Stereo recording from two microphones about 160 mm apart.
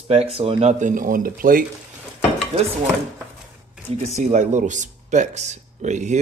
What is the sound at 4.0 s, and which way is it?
A man's voice, 50° right (ahead or behind).